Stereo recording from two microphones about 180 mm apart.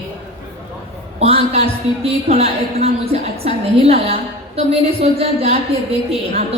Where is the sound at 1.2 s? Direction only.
35° right (ahead or behind).